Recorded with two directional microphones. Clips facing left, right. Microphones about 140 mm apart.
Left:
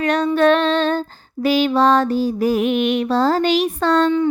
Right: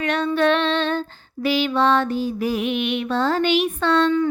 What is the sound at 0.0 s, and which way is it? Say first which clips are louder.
Female singing: left 4 dB; 40° left (ahead or behind).